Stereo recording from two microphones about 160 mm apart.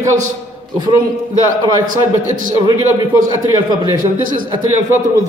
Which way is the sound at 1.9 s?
55° right (ahead or behind).